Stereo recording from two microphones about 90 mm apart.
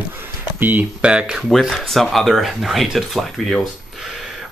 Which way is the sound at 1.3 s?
Centre (ahead or behind).